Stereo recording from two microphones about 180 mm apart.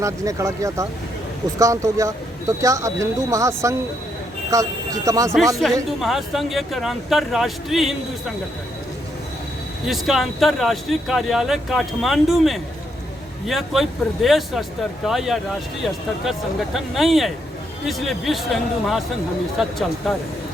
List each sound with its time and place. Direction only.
0.0 s speech: 15° right (ahead or behind)
5.6 s speech: centre (ahead or behind)
9.8 s speech: centre (ahead or behind)
16.7 s speech: centre (ahead or behind)